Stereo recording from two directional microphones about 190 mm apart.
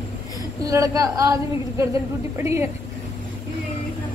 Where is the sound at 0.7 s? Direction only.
20° right (ahead or behind).